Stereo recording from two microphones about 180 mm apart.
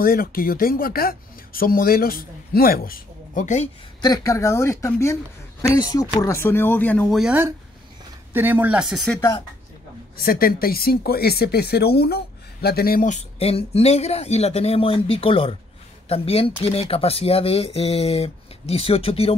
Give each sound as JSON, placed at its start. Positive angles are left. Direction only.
{"t": 0.0, "sound": "speech", "side_deg": 55}
{"t": 4.0, "sound": "speech", "side_deg": 20}
{"t": 7.2, "sound": "speech", "side_deg": -5}
{"t": 10.1, "sound": "speech", "side_deg": 55}